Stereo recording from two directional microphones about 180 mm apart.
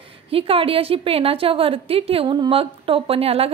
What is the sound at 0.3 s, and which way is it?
A woman's voice, 30° right (ahead or behind).